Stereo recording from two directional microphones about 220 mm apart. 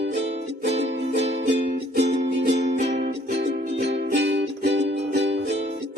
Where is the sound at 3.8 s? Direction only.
50° right (ahead or behind).